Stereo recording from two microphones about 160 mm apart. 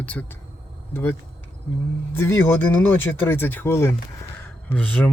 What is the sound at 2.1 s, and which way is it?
A woman's voice, 15° left (ahead or behind).